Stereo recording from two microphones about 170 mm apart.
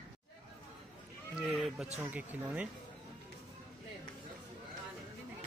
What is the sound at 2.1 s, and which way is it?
Speech, 5° right (ahead or behind).